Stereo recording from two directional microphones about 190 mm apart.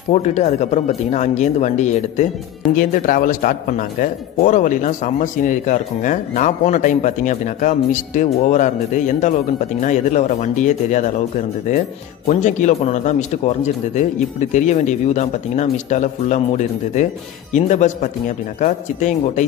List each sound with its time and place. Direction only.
0.1 s speech: 35° left (ahead or behind)